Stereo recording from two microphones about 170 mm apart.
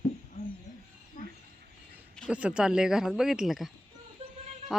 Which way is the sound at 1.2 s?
55° left (ahead or behind).